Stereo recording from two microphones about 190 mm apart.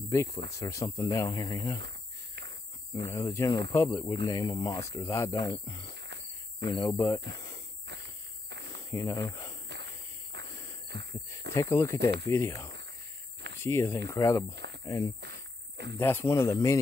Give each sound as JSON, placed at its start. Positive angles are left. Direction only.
{"t": 0.1, "sound": "speech", "side_deg": 15}
{"t": 3.1, "sound": "speech", "side_deg": 15}
{"t": 8.9, "sound": "speech", "side_deg": 15}
{"t": 10.3, "sound": "a sound", "side_deg": -60}
{"t": 10.9, "sound": "heart sounds", "side_deg": -65}
{"t": 11.5, "sound": "speech", "side_deg": 15}
{"t": 14.5, "sound": "a sound", "side_deg": -65}
{"t": 14.9, "sound": "speech", "side_deg": 15}
{"t": 15.1, "sound": "a sound", "side_deg": -60}
{"t": 16.0, "sound": "speech", "side_deg": 10}